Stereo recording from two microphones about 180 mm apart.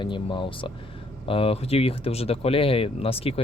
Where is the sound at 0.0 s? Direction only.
30° left (ahead or behind).